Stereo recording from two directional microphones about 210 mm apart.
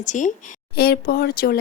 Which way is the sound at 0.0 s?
35° left (ahead or behind).